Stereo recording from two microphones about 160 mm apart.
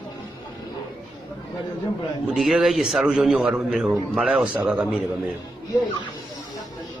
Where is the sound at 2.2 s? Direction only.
Centre (ahead or behind).